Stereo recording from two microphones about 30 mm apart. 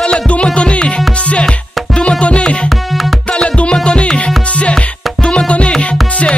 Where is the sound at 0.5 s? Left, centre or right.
Left.